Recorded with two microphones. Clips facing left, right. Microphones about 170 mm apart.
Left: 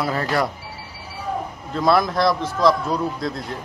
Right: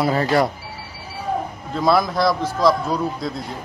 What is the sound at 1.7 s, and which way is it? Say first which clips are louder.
Speech: even; centre (ahead or behind).